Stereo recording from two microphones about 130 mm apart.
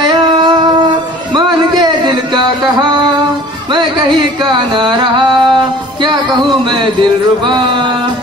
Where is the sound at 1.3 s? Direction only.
35° right (ahead or behind).